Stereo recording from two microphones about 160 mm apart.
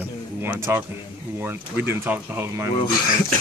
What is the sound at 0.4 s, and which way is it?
Speech, 15° right (ahead or behind).